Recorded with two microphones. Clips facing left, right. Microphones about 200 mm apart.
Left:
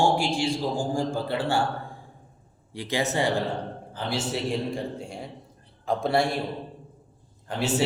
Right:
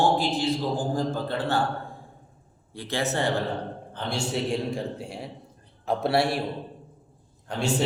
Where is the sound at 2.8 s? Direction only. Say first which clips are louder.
Left 2 dB; 15° left (ahead or behind).